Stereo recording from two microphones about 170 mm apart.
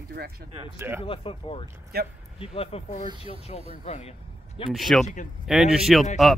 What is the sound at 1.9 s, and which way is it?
Speech, 65° right (ahead or behind).